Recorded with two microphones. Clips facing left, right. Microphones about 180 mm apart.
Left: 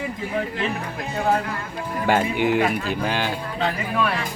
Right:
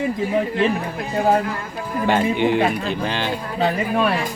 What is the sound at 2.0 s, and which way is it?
Speech, 10° left (ahead or behind).